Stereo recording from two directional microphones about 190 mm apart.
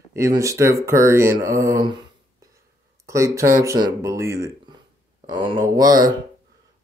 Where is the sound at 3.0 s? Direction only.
15° right (ahead or behind).